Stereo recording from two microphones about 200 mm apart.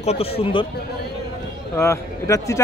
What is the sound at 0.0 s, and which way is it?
Speech, 30° left (ahead or behind).